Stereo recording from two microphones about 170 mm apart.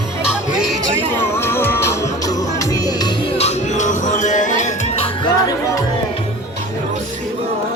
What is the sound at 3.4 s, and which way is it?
Music, 40° left (ahead or behind).